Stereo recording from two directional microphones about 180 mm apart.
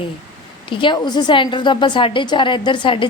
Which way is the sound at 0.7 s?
25° left (ahead or behind).